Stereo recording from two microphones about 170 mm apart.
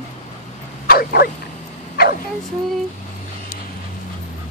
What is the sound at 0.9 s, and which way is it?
Speech, 65° left (ahead or behind).